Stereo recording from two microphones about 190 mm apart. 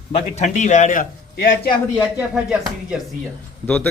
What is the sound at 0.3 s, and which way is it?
A man's voice, 40° left (ahead or behind).